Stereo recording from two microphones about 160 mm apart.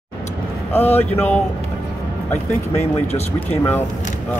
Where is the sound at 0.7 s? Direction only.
15° left (ahead or behind).